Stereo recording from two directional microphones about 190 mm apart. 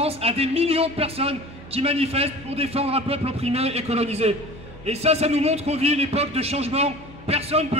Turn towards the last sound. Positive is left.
turn(degrees=-30)  # may be behind; listen again after turning